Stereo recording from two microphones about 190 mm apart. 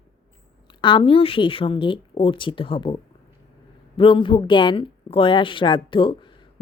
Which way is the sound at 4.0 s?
25° left (ahead or behind).